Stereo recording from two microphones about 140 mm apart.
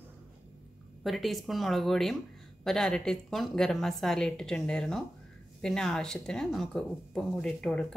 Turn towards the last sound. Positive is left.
turn(degrees=5)  # may be behind; listen again after turning